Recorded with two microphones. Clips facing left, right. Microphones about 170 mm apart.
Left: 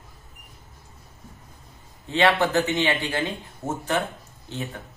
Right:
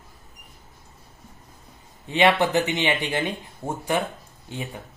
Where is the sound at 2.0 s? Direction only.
15° right (ahead or behind).